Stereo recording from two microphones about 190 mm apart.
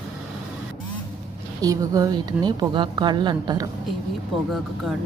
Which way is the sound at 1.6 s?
20° right (ahead or behind).